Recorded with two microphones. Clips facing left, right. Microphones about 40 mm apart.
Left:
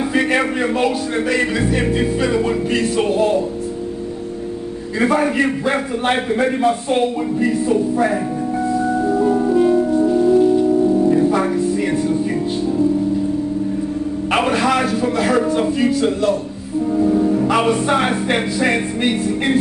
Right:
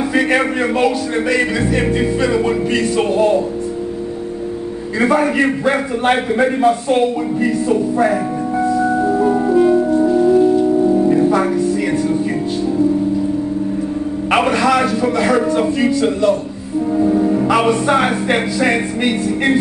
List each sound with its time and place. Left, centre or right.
0.3 s a man's voice: centre
5.0 s a man's voice: centre
8.7 s music: centre
11.3 s music: centre
14.5 s a man's voice: centre
14.8 s speech: centre
16.9 s music: centre
17.6 s a man's voice: centre